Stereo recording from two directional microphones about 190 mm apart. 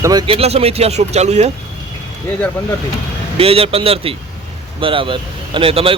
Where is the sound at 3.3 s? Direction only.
30° right (ahead or behind).